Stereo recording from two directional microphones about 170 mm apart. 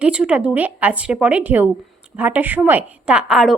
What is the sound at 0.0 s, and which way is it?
A woman's voice, 5° right (ahead or behind).